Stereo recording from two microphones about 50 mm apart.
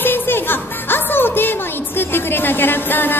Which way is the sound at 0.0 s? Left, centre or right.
Left.